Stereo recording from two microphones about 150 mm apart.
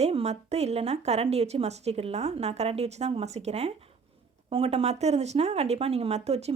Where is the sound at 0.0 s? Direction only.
45° right (ahead or behind).